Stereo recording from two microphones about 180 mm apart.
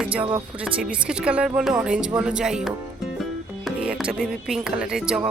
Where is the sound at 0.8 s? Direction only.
5° right (ahead or behind).